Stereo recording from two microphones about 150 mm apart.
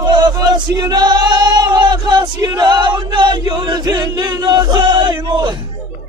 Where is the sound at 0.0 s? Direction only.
30° right (ahead or behind).